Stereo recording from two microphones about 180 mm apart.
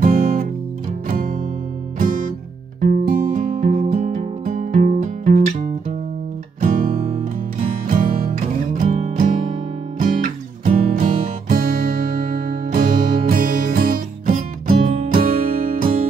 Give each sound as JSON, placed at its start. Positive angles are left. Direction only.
{"t": 0.0, "sound": "music", "side_deg": -50}
{"t": 2.9, "sound": "music", "side_deg": -45}
{"t": 8.8, "sound": "music", "side_deg": -35}
{"t": 9.9, "sound": "music", "side_deg": -50}